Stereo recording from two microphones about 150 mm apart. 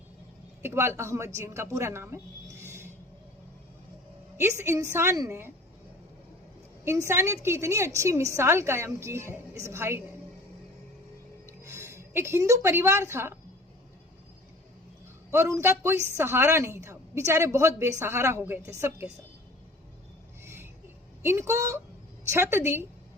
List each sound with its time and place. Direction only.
0.6 s a woman's voice: 15° right (ahead or behind)
4.4 s a woman's voice: 20° right (ahead or behind)
6.8 s a woman's voice: 20° right (ahead or behind)
11.4 s a woman's voice: 20° right (ahead or behind)
15.3 s a woman's voice: 20° right (ahead or behind)
20.4 s vehicle: 15° right (ahead or behind)
21.2 s a woman's voice: 15° right (ahead or behind)